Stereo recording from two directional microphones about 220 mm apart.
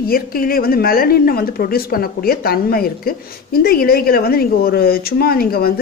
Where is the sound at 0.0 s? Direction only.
40° left (ahead or behind).